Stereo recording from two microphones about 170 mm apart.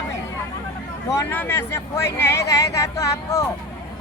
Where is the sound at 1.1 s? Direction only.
10° left (ahead or behind).